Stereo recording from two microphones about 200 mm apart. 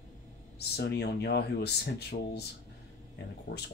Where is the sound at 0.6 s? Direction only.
55° left (ahead or behind).